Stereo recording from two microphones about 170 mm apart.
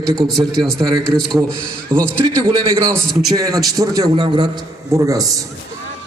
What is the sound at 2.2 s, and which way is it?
Speech, 20° right (ahead or behind).